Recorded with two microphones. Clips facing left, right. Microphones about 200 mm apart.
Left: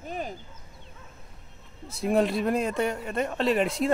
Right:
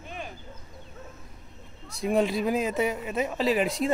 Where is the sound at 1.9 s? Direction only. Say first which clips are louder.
Left 1 dB; centre (ahead or behind).